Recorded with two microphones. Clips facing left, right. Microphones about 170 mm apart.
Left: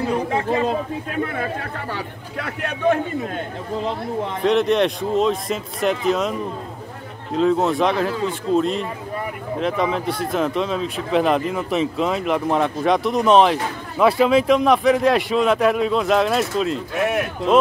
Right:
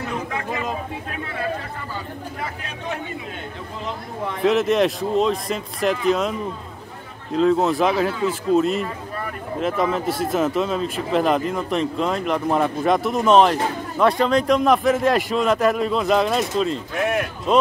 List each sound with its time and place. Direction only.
0.0 s chatter: 30° left (ahead or behind)
1.2 s speech: 50° left (ahead or behind)
1.8 s speech: 75° left (ahead or behind)
4.4 s speech: centre (ahead or behind)
7.3 s speech: centre (ahead or behind)